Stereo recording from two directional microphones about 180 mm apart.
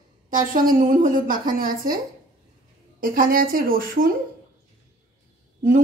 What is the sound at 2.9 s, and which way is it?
A woman's voice, 50° right (ahead or behind).